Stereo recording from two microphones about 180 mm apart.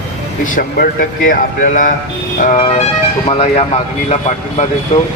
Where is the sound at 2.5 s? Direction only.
30° left (ahead or behind).